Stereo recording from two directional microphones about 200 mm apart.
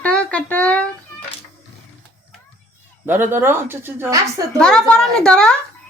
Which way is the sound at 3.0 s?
10° right (ahead or behind).